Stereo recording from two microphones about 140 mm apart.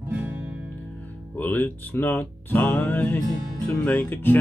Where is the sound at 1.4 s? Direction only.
15° left (ahead or behind).